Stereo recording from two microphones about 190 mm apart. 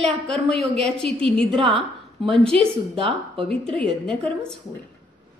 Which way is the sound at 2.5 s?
30° right (ahead or behind).